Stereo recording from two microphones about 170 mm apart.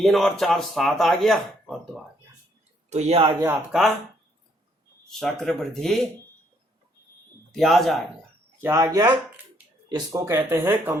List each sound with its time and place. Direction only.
0.0 s speech: centre (ahead or behind)
2.9 s a man's voice: 40° right (ahead or behind)
3.7 s speech: centre (ahead or behind)
5.0 s speech: centre (ahead or behind)
7.5 s speech: centre (ahead or behind)
8.6 s speech: 15° right (ahead or behind)